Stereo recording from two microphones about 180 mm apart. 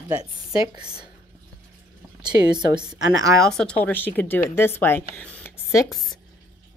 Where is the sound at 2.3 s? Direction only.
25° right (ahead or behind).